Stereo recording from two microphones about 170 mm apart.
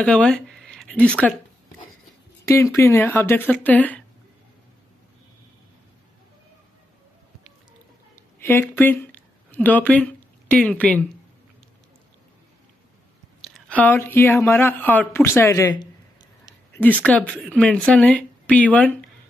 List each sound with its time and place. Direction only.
0.0 s speech: 5° left (ahead or behind)
2.4 s speech: 15° left (ahead or behind)
8.4 s speech: 10° left (ahead or behind)
13.4 s speech: 10° left (ahead or behind)
16.4 s a woman's voice: 10° left (ahead or behind)